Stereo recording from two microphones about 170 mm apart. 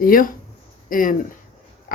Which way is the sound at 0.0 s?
55° left (ahead or behind).